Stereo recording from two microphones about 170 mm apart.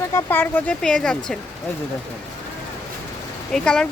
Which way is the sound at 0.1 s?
15° left (ahead or behind).